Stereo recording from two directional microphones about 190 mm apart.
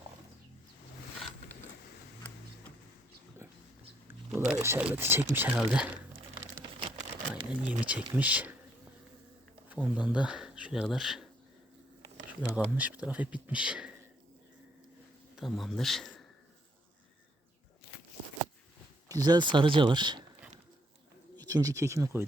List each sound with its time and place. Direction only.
4.3 s speech: 15° right (ahead or behind)
6.7 s a sound: 25° right (ahead or behind)
7.7 s speech: 5° right (ahead or behind)
9.8 s speech: centre (ahead or behind)
12.5 s speech: 10° right (ahead or behind)
15.4 s speech: centre (ahead or behind)
19.0 s speech: 20° right (ahead or behind)
21.3 s speech: 20° right (ahead or behind)